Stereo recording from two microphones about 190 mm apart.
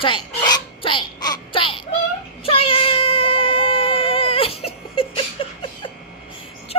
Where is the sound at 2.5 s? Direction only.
30° left (ahead or behind).